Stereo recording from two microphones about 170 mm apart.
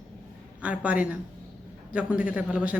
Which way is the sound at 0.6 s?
5° right (ahead or behind).